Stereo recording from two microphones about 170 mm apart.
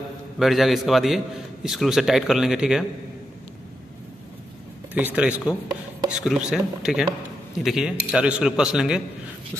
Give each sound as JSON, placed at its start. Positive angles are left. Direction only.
{"t": 0.4, "sound": "a man's voice", "side_deg": 0}
{"t": 4.9, "sound": "a man's voice", "side_deg": -10}